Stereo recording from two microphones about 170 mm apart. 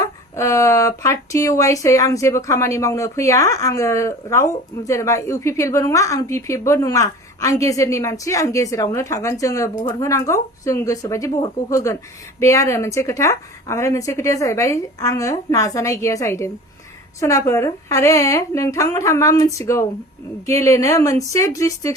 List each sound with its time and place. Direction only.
0.0 s a woman's voice: 15° left (ahead or behind)